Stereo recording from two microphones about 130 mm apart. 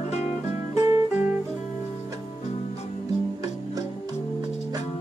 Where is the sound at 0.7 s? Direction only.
25° right (ahead or behind).